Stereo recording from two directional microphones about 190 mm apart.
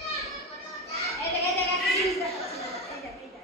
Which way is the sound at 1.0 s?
15° left (ahead or behind).